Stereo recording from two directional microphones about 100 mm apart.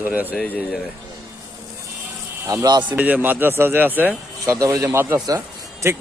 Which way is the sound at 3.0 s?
15° right (ahead or behind).